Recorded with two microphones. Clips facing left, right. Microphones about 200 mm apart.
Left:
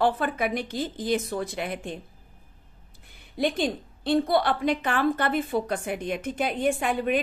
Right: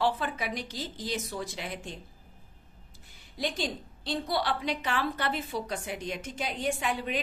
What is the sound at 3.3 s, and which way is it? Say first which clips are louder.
A woman's voice: left 7 dB; 55° left (ahead or behind).